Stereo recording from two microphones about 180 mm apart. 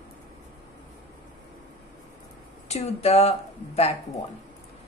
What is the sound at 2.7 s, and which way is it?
A woman's voice, 35° left (ahead or behind).